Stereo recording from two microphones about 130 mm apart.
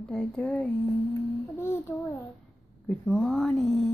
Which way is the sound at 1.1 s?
20° left (ahead or behind).